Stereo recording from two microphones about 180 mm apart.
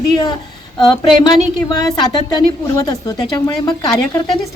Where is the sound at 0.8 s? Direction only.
25° left (ahead or behind).